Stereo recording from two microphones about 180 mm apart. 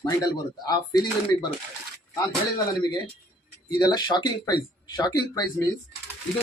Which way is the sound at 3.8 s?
25° left (ahead or behind).